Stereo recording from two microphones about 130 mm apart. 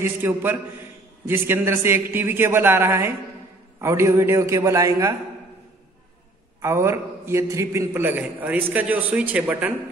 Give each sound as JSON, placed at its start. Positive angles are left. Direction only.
{"t": 0.0, "sound": "a man's voice", "side_deg": -15}
{"t": 6.6, "sound": "a man's voice", "side_deg": -20}